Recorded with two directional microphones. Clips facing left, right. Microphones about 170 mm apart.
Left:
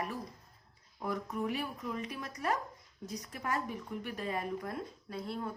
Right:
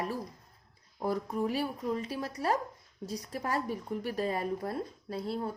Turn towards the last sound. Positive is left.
turn(degrees=-35)  # may be behind; listen again after turning